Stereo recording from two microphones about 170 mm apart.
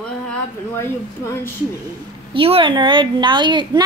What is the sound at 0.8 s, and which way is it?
Speech, 15° left (ahead or behind).